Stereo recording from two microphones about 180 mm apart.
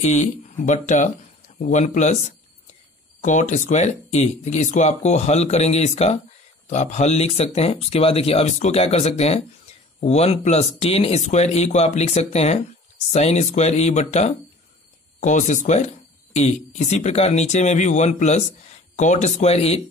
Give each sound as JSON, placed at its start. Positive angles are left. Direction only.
{"t": 0.0, "sound": "speech", "side_deg": 40}